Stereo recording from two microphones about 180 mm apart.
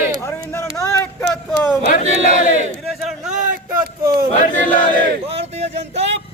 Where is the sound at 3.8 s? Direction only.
55° right (ahead or behind).